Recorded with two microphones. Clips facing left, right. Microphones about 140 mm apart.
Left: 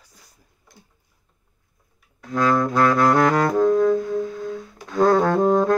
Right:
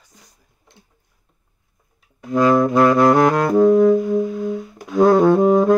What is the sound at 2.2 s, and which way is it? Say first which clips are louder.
Saxophone: right 5 dB; 15° right (ahead or behind).